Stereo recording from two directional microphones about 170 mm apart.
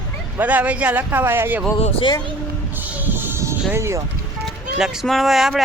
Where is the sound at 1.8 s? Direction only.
35° left (ahead or behind).